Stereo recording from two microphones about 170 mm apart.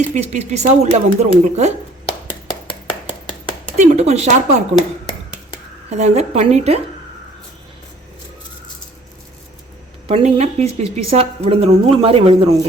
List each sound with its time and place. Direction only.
0.1 s speech: 40° right (ahead or behind)
3.8 s speech: 40° right (ahead or behind)
5.9 s speech: 40° right (ahead or behind)
10.1 s speech: 40° right (ahead or behind)